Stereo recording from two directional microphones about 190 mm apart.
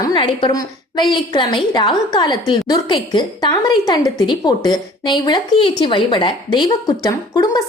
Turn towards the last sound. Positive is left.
turn(degrees=20)  # may be behind; listen again after turning